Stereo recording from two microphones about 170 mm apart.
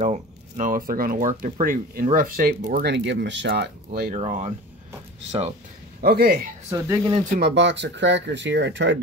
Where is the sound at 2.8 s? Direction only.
90° right; by 4.1 s 70° right (ahead or behind).